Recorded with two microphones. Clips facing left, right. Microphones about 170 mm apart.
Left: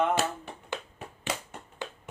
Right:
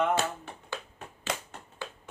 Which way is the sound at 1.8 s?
20° left (ahead or behind).